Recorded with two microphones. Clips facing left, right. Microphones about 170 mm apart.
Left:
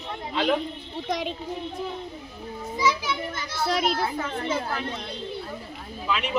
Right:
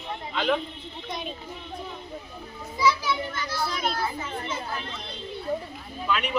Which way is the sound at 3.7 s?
85° left.